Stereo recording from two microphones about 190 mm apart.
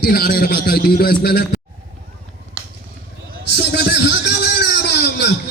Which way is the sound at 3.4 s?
60° left (ahead or behind).